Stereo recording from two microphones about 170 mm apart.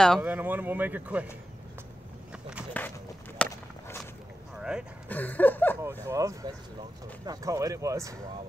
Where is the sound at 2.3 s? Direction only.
5° right (ahead or behind).